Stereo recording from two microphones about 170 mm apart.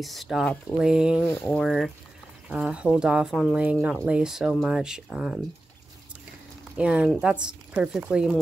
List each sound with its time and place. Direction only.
0.0 s speech: centre (ahead or behind)
6.8 s speech: 5° right (ahead or behind)